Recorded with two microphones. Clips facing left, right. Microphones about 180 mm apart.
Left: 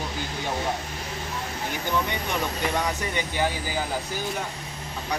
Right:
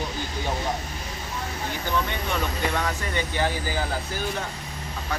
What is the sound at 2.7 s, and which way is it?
Speech, 15° left (ahead or behind).